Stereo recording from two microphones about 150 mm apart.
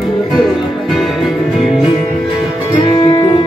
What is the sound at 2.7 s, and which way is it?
Music, 30° left (ahead or behind).